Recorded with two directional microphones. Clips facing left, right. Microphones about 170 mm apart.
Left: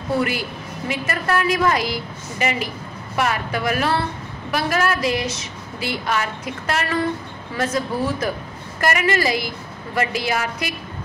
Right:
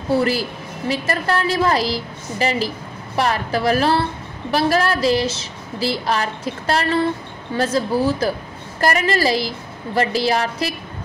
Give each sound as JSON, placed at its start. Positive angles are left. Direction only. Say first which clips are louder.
{"t": 0.1, "sound": "a woman's voice", "louder": "right 4 dB", "side_deg": -35}